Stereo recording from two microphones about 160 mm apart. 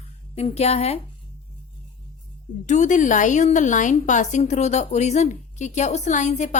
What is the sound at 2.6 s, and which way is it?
A woman's voice, 50° left (ahead or behind).